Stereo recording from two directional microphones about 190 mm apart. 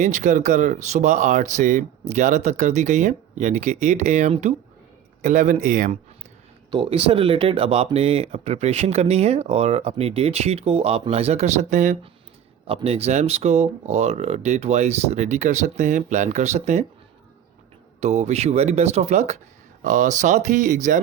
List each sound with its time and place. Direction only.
0.0 s speech: 40° right (ahead or behind)
6.7 s speech: 30° right (ahead or behind)
12.6 s speech: 30° right (ahead or behind)
18.0 s speech: 35° right (ahead or behind)